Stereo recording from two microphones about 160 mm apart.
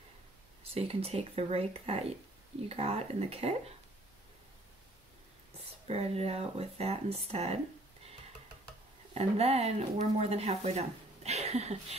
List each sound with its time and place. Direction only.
0.7 s speech: 40° right (ahead or behind)
5.9 s speech: 40° right (ahead or behind)
9.1 s speech: 40° right (ahead or behind)